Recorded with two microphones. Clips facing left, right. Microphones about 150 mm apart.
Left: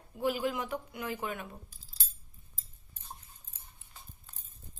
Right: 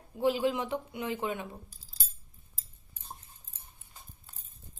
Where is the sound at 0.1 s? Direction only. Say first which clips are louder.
Right 4 dB; 25° right (ahead or behind).